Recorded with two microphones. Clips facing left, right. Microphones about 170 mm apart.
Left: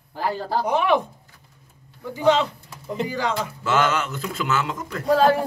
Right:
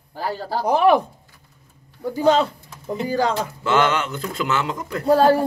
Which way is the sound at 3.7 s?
5° left (ahead or behind).